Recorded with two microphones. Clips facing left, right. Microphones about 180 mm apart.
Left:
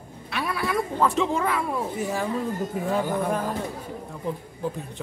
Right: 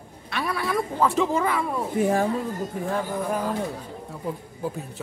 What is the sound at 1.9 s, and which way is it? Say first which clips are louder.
Speech: right 6 dB; 55° right (ahead or behind).